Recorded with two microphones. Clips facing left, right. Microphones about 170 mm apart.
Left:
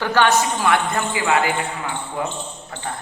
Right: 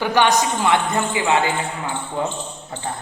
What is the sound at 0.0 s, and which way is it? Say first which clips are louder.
A woman's voice: even; 15° right (ahead or behind).